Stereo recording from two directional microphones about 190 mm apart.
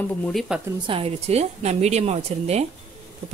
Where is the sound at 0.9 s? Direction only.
30° right (ahead or behind).